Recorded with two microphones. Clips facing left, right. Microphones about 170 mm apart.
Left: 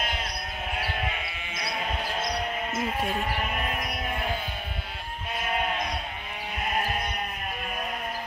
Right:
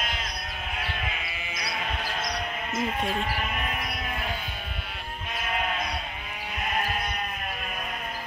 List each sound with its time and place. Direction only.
1.5 s sheep: 25° left (ahead or behind)
3.0 s speech: 5° left (ahead or behind)